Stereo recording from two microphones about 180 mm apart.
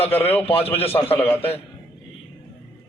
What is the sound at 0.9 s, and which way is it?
Speech, 10° left (ahead or behind).